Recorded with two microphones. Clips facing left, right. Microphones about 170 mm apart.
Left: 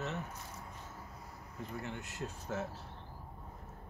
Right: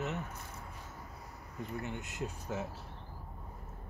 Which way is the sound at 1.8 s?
20° right (ahead or behind).